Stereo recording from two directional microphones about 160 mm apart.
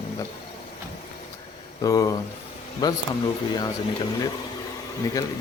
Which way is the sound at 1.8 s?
20° left (ahead or behind).